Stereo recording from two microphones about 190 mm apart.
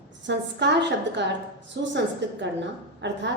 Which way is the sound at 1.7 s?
65° right (ahead or behind).